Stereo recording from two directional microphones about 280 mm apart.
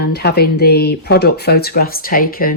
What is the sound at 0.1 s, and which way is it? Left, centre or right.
Speech, left.